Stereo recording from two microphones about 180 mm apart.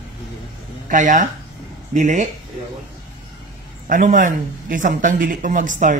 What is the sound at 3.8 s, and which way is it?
Speech, 50° right (ahead or behind).